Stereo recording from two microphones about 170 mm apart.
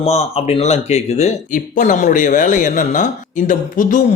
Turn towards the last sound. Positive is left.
turn(degrees=50)  # may be behind; listen again after turning